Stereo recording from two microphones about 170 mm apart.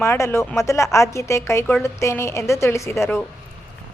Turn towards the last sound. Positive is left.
turn(degrees=15)  # may be behind; listen again after turning